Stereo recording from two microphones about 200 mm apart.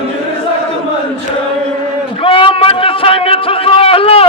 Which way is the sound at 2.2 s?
25° left (ahead or behind).